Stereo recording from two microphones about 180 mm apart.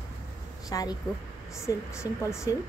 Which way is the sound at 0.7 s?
20° left (ahead or behind).